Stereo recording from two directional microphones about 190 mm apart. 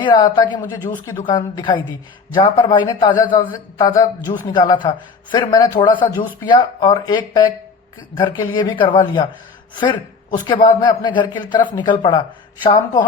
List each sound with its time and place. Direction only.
0.0 s a man's voice: 25° left (ahead or behind)